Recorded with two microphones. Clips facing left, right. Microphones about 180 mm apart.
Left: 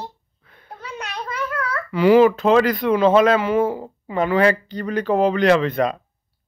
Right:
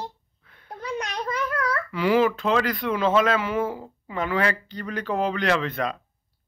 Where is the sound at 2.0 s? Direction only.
40° left (ahead or behind).